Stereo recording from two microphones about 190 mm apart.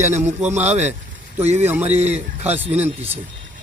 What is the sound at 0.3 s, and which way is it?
A man's voice, 35° right (ahead or behind).